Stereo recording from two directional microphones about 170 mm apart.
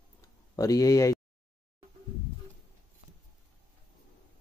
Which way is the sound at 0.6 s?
20° left (ahead or behind).